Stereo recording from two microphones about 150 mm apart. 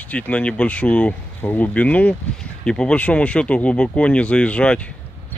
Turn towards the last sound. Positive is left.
turn(degrees=5)  # may be behind; listen again after turning